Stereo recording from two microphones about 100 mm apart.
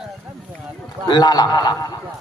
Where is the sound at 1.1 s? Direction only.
45° left (ahead or behind).